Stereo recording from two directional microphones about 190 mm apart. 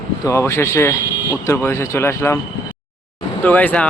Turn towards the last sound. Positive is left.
turn(degrees=5)  # may be behind; listen again after turning